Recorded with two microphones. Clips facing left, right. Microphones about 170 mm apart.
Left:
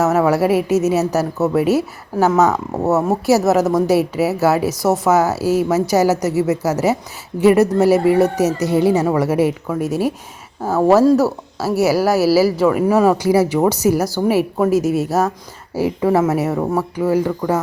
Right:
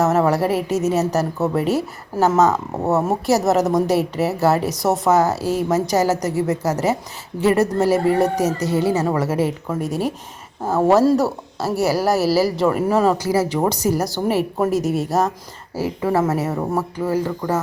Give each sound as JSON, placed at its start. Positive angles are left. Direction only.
{"t": 0.0, "sound": "a woman's voice", "side_deg": 5}
{"t": 3.6, "sound": "speech", "side_deg": -15}
{"t": 3.8, "sound": "a woman's voice", "side_deg": 5}
{"t": 15.7, "sound": "speech", "side_deg": 15}